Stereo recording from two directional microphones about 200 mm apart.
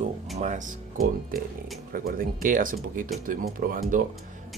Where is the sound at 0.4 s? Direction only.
40° right (ahead or behind).